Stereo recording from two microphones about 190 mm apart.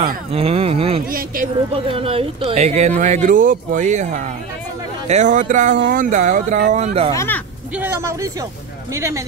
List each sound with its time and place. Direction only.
0.3 s speech: 30° right (ahead or behind)
1.0 s speech: 50° right (ahead or behind)
1.9 s speech: 30° right (ahead or behind)
7.2 s speech: 10° left (ahead or behind)
7.7 s speech: 10° right (ahead or behind)